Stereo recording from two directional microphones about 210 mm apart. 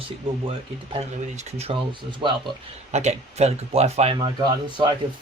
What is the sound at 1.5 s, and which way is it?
Speech, 30° right (ahead or behind).